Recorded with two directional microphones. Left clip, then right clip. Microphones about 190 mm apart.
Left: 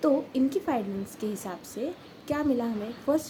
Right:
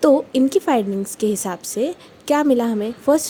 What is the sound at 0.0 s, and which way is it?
A woman's voice, 50° right (ahead or behind).